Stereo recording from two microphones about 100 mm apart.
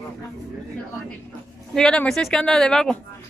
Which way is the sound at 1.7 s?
5° left (ahead or behind).